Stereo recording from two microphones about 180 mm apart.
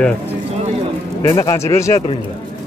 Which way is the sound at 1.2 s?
15° left (ahead or behind).